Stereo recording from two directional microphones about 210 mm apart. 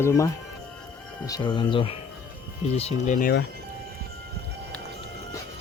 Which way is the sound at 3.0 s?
40° left (ahead or behind).